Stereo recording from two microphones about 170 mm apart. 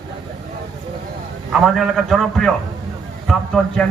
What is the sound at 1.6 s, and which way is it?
A man's voice, centre (ahead or behind).